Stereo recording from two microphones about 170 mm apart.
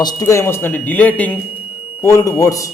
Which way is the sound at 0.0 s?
20° left (ahead or behind).